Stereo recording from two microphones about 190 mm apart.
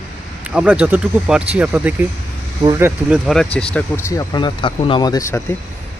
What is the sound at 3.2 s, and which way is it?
Speech, 5° left (ahead or behind).